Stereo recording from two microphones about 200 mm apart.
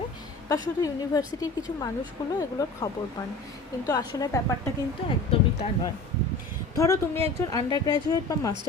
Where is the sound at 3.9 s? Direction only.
20° left (ahead or behind).